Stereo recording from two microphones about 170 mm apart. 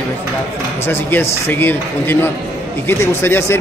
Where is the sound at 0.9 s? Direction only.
10° left (ahead or behind).